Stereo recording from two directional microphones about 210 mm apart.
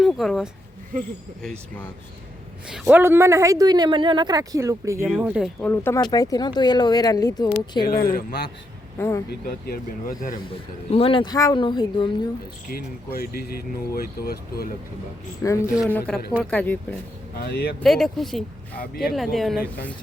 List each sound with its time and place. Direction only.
0.0 s a woman's voice: centre (ahead or behind)
2.6 s a woman's voice: 5° right (ahead or behind)
5.0 s a woman's voice: centre (ahead or behind)
5.6 s speech: 10° left (ahead or behind)
7.9 s speech: 45° left (ahead or behind)
9.0 s speech: 10° left (ahead or behind)
9.5 s speech: 45° left (ahead or behind)
10.9 s speech: 25° left (ahead or behind)
12.6 s speech: 45° left (ahead or behind)
15.4 s speech: 15° left (ahead or behind)
17.3 s speech: 50° left (ahead or behind)
17.8 s a woman's voice: centre (ahead or behind)